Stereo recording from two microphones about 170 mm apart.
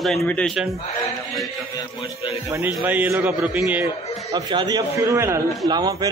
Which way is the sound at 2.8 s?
10° right (ahead or behind).